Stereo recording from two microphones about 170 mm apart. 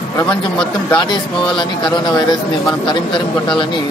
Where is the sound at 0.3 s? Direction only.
5° left (ahead or behind).